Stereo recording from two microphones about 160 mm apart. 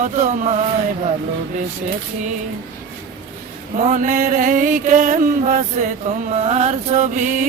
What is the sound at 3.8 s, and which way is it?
Mantra, 50° right (ahead or behind).